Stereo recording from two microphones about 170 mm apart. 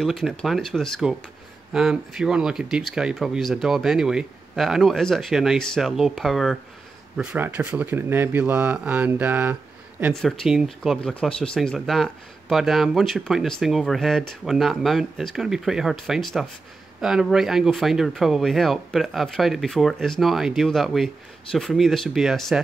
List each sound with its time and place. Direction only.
0.0 s speech: centre (ahead or behind)
7.2 s speech: 10° right (ahead or behind)
10.1 s speech: centre (ahead or behind)